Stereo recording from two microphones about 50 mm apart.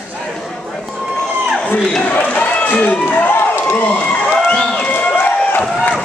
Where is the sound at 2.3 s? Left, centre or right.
Left.